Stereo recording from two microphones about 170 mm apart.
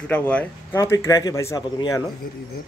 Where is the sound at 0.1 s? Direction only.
10° left (ahead or behind).